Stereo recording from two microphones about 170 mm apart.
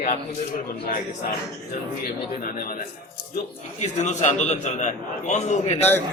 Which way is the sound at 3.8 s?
45° left (ahead or behind).